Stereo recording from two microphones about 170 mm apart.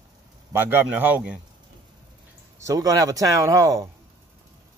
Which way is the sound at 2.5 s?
20° right (ahead or behind).